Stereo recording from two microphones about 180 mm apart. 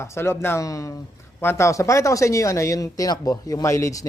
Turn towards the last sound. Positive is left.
turn(degrees=15)  # may be behind; listen again after turning